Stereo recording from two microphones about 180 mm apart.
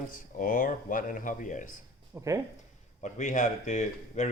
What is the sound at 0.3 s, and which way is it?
Speech, 50° left (ahead or behind).